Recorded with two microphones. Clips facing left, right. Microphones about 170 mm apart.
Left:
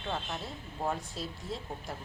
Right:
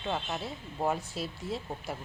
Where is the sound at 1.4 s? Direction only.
65° right (ahead or behind).